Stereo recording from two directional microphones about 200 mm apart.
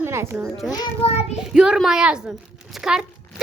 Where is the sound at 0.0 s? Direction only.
10° right (ahead or behind).